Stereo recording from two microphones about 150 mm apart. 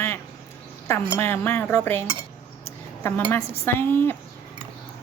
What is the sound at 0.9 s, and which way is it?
A woman's voice, 15° left (ahead or behind).